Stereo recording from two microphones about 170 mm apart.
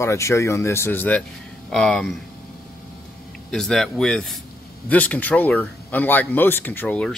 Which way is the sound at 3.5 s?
5° left (ahead or behind).